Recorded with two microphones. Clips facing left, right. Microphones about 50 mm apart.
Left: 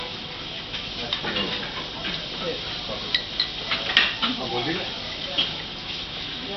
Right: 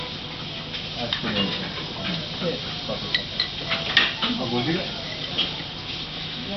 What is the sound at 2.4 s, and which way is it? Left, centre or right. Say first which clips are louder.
Speech: right 3 dB; right.